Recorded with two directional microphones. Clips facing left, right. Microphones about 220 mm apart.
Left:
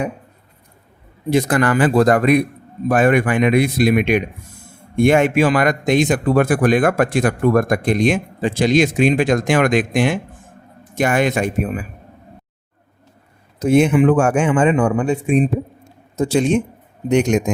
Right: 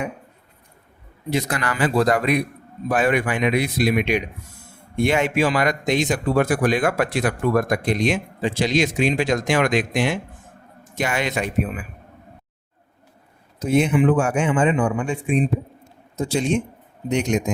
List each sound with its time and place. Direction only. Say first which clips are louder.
1.3 s speech: left 8 dB; 50° left (ahead or behind)
13.7 s speech: left 4 dB; 50° left (ahead or behind)
16.1 s a man's voice: left 5 dB; 55° left (ahead or behind)